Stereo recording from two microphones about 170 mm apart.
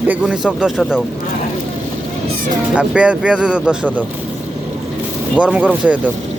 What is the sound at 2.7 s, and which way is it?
Speech, 5° right (ahead or behind).